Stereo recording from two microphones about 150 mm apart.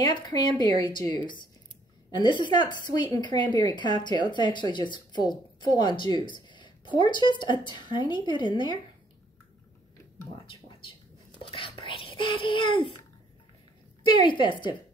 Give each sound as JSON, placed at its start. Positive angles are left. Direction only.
{"t": 0.0, "sound": "a woman's voice", "side_deg": 25}
{"t": 10.3, "sound": "whispering", "side_deg": 35}
{"t": 14.0, "sound": "a woman's voice", "side_deg": 35}